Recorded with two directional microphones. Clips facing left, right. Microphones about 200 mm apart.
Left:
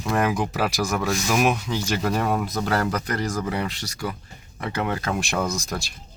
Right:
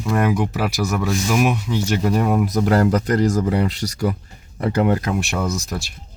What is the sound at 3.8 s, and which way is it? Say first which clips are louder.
Speech: right 9 dB; 40° right (ahead or behind).